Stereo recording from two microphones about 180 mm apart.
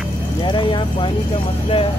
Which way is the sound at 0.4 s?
25° left (ahead or behind).